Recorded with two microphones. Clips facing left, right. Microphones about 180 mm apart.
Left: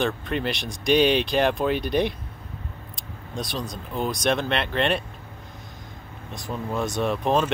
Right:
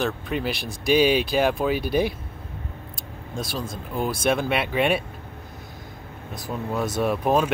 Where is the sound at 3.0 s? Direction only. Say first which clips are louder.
Even; 5° right (ahead or behind).